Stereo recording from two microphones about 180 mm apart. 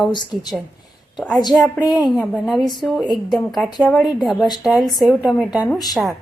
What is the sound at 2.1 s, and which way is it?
A woman's voice, 5° left (ahead or behind).